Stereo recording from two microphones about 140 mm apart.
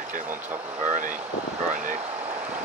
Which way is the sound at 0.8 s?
65° right (ahead or behind).